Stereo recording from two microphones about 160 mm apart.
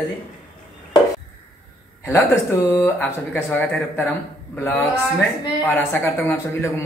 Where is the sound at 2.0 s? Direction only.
15° left (ahead or behind).